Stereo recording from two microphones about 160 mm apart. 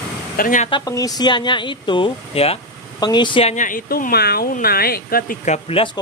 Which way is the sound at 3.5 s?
55° left (ahead or behind).